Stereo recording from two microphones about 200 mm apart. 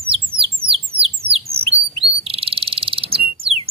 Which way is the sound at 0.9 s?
50° right (ahead or behind).